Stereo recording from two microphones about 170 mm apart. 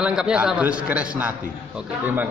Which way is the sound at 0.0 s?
5° right (ahead or behind).